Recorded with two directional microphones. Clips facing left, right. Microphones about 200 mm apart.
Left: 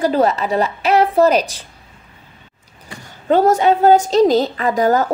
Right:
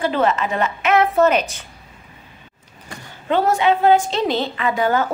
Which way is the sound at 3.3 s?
40° left (ahead or behind).